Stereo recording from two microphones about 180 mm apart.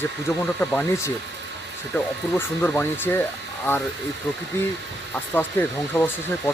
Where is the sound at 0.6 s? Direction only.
10° left (ahead or behind).